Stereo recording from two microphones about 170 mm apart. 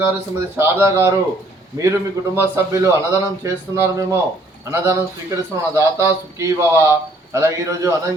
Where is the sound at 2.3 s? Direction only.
15° right (ahead or behind).